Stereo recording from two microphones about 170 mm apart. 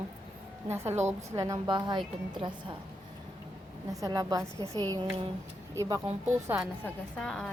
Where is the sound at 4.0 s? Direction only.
20° right (ahead or behind).